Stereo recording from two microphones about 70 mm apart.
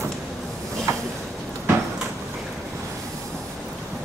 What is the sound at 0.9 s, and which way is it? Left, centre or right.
Train, right.